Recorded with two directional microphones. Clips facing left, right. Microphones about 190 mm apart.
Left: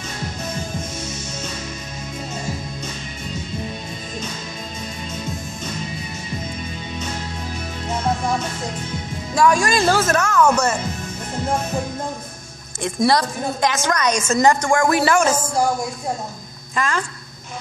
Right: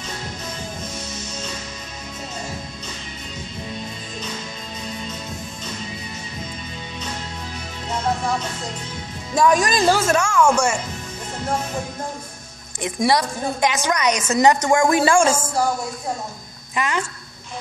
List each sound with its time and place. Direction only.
9.3 s a woman's voice: 20° right (ahead or behind)
12.8 s a woman's voice: 15° right (ahead or behind)
16.7 s a woman's voice: 15° right (ahead or behind)